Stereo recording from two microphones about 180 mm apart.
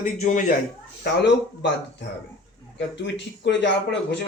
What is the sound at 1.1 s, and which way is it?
Speech, 75° left (ahead or behind).